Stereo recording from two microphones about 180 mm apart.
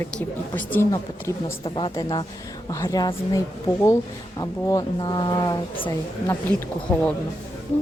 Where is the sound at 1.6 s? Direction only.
30° left (ahead or behind).